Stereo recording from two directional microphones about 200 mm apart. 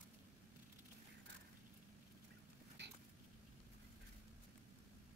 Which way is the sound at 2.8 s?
60° right (ahead or behind).